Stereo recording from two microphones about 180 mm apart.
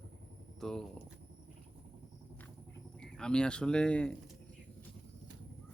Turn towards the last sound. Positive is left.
turn(degrees=5)  # may be behind; listen again after turning